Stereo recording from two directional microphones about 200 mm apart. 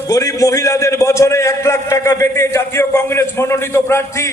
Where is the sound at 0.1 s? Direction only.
15° left (ahead or behind).